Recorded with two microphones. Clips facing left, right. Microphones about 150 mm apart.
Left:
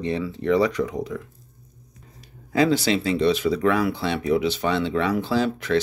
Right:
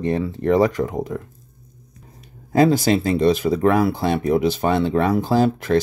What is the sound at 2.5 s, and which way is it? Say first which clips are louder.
Speech: right 4 dB; 45° right (ahead or behind).